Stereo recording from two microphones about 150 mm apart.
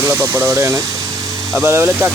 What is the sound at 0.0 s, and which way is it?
Speech, 20° right (ahead or behind).